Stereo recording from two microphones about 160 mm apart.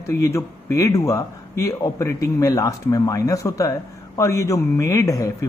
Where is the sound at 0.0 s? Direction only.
15° left (ahead or behind).